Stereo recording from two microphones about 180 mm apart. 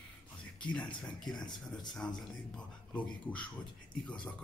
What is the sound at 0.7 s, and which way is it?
Speech, 5° left (ahead or behind).